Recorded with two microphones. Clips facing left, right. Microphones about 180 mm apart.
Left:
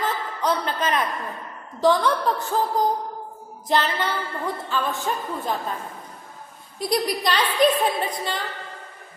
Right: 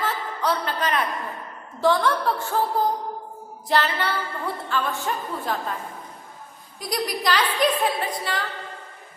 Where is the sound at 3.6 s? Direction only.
20° left (ahead or behind).